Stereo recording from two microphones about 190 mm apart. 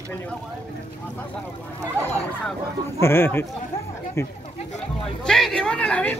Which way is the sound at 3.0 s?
10° left (ahead or behind).